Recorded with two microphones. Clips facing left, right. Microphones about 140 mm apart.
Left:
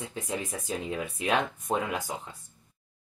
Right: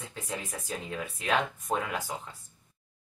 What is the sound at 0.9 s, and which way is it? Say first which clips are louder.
Speech: left 1 dB; 20° left (ahead or behind).